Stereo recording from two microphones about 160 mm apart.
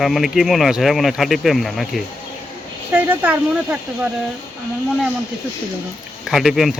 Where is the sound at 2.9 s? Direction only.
10° right (ahead or behind).